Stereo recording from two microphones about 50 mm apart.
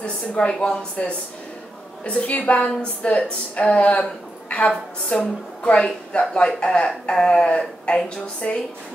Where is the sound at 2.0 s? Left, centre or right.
Left.